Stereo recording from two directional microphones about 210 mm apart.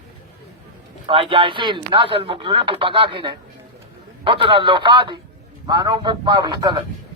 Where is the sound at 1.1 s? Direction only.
25° right (ahead or behind).